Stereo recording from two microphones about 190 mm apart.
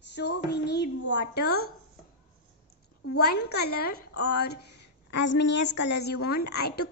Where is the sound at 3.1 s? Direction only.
60° left (ahead or behind).